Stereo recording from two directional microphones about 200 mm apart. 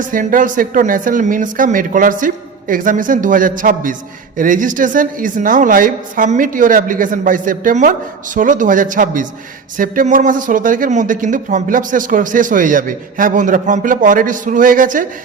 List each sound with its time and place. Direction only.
0.0 s speech: 40° right (ahead or behind)